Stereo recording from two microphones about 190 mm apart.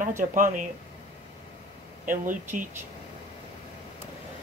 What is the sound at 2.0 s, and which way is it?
Speech, 45° right (ahead or behind).